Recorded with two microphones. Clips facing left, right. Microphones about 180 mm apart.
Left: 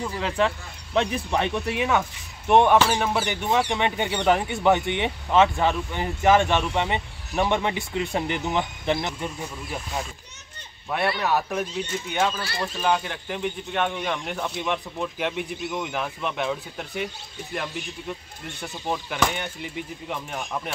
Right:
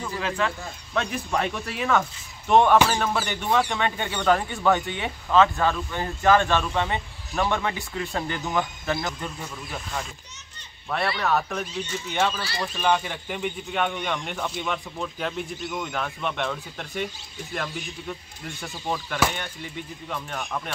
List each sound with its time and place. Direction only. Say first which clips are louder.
0.4 s speech: left 3 dB; 25° left (ahead or behind)
10.9 s speech: left 1 dB; 5° left (ahead or behind)
18.6 s speech: left 1 dB; centre (ahead or behind)
20.1 s speech: right 1 dB; 10° left (ahead or behind)